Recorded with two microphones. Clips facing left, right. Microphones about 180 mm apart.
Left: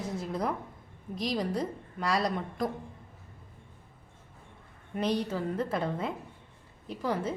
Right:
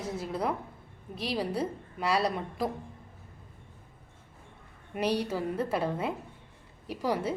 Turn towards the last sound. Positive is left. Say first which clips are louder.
# right 1 dB
turn(degrees=-10)  # may be behind; listen again after turning